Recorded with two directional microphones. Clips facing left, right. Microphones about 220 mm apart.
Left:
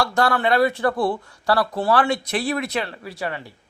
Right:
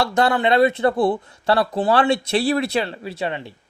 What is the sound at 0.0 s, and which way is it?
Speech, 20° right (ahead or behind).